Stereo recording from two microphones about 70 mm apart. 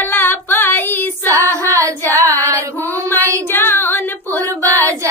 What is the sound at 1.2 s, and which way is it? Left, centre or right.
Child singing, right.